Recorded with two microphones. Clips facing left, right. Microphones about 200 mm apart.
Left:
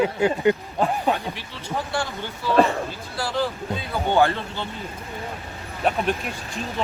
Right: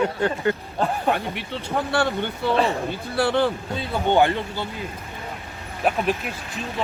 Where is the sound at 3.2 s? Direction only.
55° right (ahead or behind).